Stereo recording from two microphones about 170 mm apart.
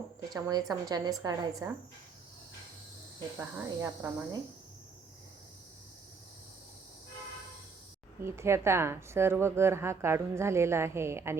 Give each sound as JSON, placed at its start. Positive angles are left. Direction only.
{"t": 0.3, "sound": "a woman's voice", "side_deg": -20}
{"t": 3.3, "sound": "a woman's voice", "side_deg": -15}
{"t": 8.2, "sound": "a woman's voice", "side_deg": -15}